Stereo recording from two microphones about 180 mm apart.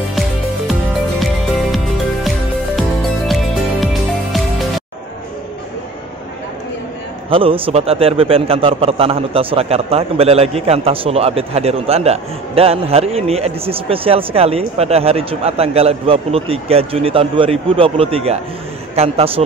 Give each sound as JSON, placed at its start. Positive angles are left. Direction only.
{"t": 3.8, "sound": "music", "side_deg": 0}
{"t": 7.2, "sound": "a man's voice", "side_deg": -30}